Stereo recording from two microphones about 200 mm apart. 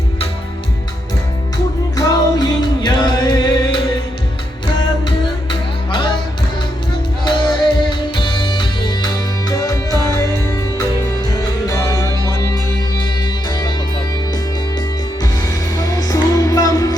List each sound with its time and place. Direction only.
2.0 s music: 20° left (ahead or behind)
7.3 s music: 25° left (ahead or behind)
11.7 s music: 15° left (ahead or behind)
15.2 s music: 15° left (ahead or behind)